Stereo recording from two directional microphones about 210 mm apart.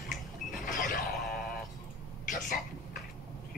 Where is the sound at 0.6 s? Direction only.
40° left (ahead or behind).